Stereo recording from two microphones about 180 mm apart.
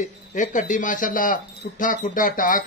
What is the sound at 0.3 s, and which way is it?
Speech, 45° left (ahead or behind).